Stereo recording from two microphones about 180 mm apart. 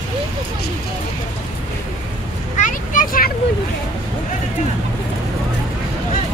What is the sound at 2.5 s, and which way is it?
Vehicle, 45° left (ahead or behind).